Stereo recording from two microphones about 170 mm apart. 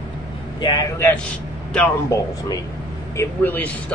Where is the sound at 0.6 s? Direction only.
25° left (ahead or behind).